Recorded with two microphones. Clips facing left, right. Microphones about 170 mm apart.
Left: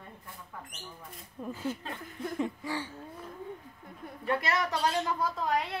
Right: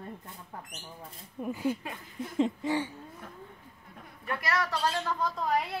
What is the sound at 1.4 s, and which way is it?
Speech, 15° right (ahead or behind).